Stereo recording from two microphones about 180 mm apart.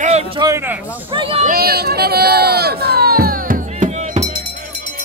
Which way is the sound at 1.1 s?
30° right (ahead or behind).